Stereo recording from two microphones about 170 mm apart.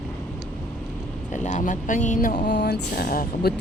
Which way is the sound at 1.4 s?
50° left (ahead or behind).